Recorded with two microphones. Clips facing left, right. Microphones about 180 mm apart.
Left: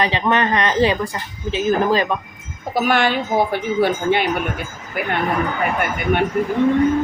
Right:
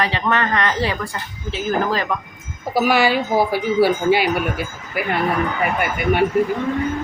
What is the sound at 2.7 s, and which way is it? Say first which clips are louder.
A woman's voice: right 1 dB; 5° right (ahead or behind).